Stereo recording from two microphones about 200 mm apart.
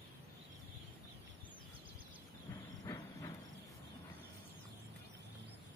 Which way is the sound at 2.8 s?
15° left (ahead or behind).